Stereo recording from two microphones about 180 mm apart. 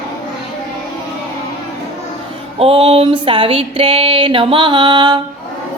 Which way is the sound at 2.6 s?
35° right (ahead or behind).